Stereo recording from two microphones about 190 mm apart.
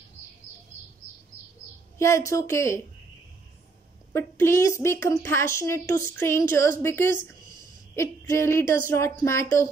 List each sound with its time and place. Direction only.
2.0 s speech: 15° left (ahead or behind)
4.1 s speech: 15° left (ahead or behind)